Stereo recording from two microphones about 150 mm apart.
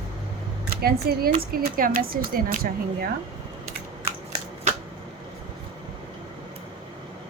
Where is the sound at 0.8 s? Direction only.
90° right.